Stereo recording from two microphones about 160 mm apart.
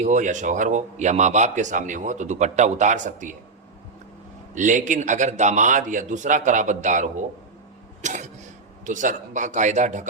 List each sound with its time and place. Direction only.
0.0 s speech: 50° right (ahead or behind)
4.5 s speech: 55° right (ahead or behind)